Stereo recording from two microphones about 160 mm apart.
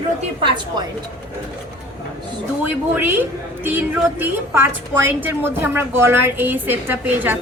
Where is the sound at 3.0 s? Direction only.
15° right (ahead or behind).